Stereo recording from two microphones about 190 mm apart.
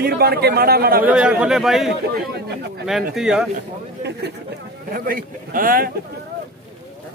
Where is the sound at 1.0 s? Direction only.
5° right (ahead or behind).